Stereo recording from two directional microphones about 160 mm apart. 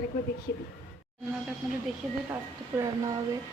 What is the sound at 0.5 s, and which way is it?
Speech, 90° left.